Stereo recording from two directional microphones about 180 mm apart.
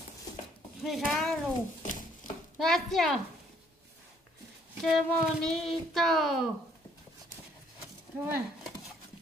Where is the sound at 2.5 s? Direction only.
Centre (ahead or behind).